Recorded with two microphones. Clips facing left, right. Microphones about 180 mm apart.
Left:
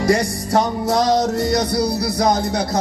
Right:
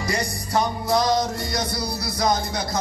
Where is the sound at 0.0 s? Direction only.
90° left; by 2.8 s 65° left (ahead or behind).